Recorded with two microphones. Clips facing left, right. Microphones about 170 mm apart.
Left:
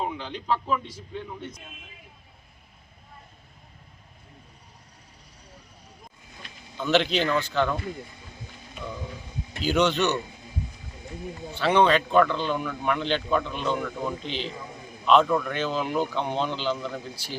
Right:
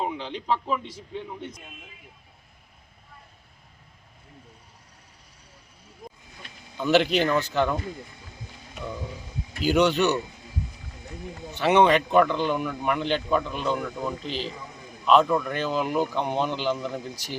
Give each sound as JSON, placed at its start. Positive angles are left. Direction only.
{"t": 0.0, "sound": "speech", "side_deg": -20}
{"t": 6.7, "sound": "a man's voice", "side_deg": -15}
{"t": 11.5, "sound": "a man's voice", "side_deg": -15}